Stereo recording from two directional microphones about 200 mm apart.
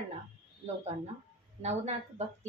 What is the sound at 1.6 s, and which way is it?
Speech, 35° right (ahead or behind).